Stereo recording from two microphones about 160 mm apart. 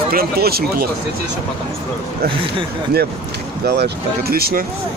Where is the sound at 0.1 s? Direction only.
70° right (ahead or behind).